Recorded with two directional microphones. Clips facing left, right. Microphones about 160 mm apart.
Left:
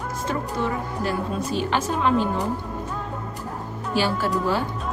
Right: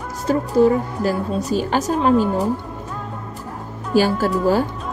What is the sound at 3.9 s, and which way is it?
Speech, 45° right (ahead or behind).